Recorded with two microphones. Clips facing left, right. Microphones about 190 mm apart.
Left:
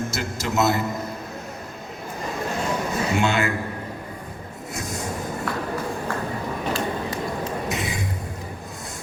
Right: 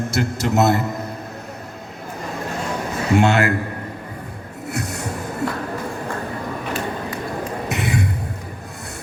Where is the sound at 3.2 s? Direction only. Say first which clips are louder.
Right 6 dB; 65° right (ahead or behind).